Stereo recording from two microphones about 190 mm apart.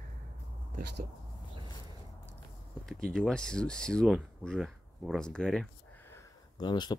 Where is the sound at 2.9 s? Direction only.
5° left (ahead or behind).